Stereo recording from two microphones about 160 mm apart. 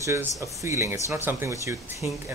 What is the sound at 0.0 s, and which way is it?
Speech, 20° right (ahead or behind).